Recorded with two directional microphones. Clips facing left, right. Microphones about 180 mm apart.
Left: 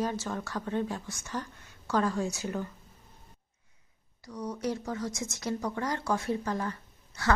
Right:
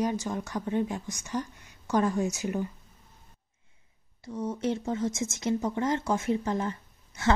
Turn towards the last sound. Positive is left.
turn(degrees=-20)  # may be behind; listen again after turning